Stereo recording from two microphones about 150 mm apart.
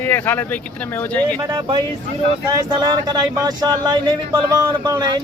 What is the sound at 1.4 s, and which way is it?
Speech, 25° right (ahead or behind).